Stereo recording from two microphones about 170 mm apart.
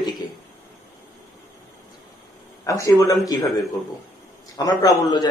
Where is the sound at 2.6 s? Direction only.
20° left (ahead or behind).